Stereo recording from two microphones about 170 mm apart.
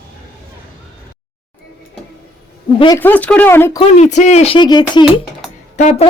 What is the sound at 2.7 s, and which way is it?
Speech, 25° left (ahead or behind).